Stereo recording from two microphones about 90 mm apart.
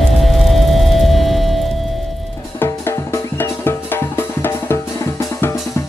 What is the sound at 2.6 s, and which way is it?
Music, 30° left (ahead or behind).